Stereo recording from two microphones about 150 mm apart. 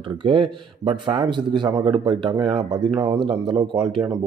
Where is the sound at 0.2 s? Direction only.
35° right (ahead or behind).